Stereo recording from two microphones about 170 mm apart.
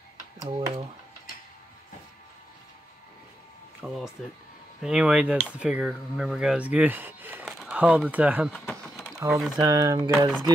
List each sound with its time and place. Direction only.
0.5 s speech: 35° right (ahead or behind)
3.8 s speech: centre (ahead or behind)
8.5 s a sound: 5° left (ahead or behind)
9.6 s speech: 20° right (ahead or behind)